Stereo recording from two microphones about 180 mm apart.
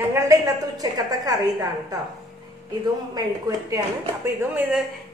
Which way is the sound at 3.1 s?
20° right (ahead or behind).